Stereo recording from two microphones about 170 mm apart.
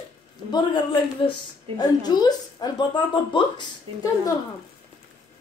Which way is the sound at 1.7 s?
25° left (ahead or behind).